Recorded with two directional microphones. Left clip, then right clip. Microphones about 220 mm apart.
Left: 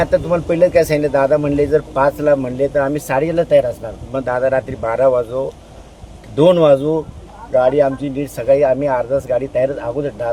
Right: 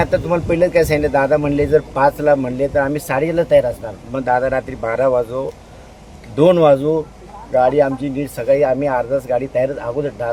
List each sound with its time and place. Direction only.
0.0 s speech: centre (ahead or behind)